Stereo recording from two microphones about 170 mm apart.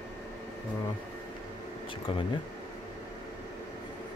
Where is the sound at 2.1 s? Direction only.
30° left (ahead or behind).